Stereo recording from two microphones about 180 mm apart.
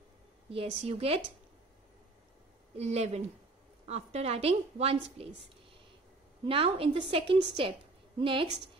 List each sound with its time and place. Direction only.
0.5 s a woman's voice: 35° right (ahead or behind)
2.7 s a woman's voice: 35° right (ahead or behind)